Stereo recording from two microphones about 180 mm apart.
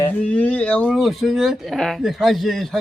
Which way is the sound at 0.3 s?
5° left (ahead or behind).